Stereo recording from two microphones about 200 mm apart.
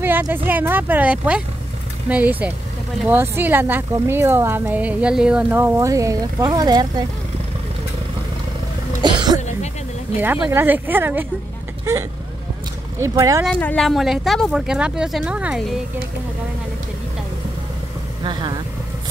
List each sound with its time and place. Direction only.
0.0 s speech: 10° right (ahead or behind)
9.0 s music: 20° right (ahead or behind)
10.1 s speech: 10° right (ahead or behind)
13.0 s speech: 15° right (ahead or behind)
13.5 s speech: 5° left (ahead or behind)
18.2 s speech: 25° right (ahead or behind)